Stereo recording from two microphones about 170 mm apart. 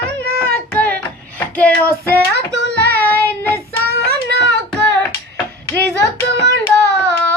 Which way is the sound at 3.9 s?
70° right (ahead or behind).